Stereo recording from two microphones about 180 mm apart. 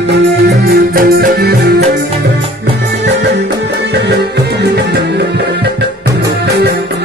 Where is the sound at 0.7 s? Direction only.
55° right (ahead or behind).